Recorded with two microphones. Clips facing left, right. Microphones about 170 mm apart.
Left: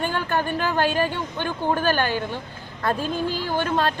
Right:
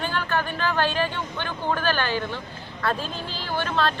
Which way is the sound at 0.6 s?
10° left (ahead or behind).